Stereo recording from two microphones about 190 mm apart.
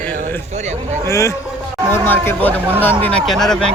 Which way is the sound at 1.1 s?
15° left (ahead or behind).